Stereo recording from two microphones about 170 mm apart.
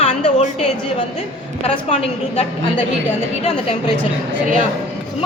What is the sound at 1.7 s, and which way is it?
A woman's voice, 40° left (ahead or behind).